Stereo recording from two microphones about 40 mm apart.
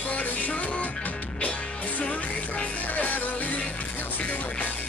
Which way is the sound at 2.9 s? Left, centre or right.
Left.